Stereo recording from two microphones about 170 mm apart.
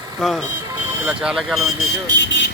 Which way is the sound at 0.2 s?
Centre (ahead or behind).